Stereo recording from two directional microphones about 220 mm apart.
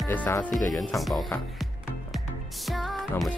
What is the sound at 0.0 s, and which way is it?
Speech, 10° left (ahead or behind).